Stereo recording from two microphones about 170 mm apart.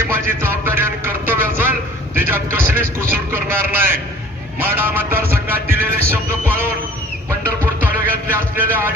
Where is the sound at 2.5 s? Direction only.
15° right (ahead or behind).